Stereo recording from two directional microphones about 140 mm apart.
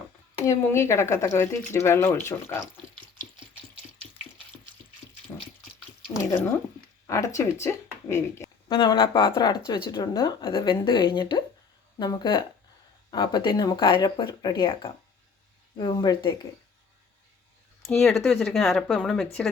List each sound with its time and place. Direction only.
0.4 s speech: 20° left (ahead or behind)
5.3 s water: 20° left (ahead or behind)
6.1 s speech: 15° left (ahead or behind)
8.7 s speech: 35° left (ahead or behind)
18.3 s speech: centre (ahead or behind)